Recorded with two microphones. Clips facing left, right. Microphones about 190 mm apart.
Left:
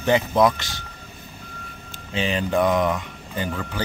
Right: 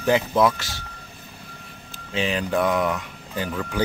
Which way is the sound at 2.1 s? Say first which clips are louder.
Left 1 dB; centre (ahead or behind).